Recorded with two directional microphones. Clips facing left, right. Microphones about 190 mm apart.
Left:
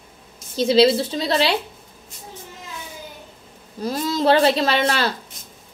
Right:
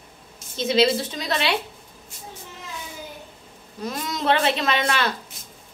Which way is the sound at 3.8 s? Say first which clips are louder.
Left 5 dB; 30° left (ahead or behind).